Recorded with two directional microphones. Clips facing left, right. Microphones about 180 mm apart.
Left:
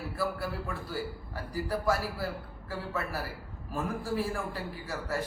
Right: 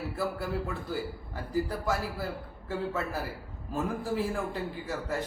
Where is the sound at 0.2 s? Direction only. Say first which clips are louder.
Right 1 dB; 20° right (ahead or behind).